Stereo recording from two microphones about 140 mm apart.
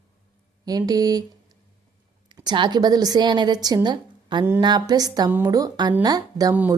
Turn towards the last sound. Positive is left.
turn(degrees=-25)  # may be behind; listen again after turning